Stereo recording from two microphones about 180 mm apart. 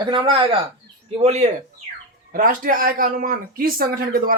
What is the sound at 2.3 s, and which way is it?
Speech, 50° right (ahead or behind).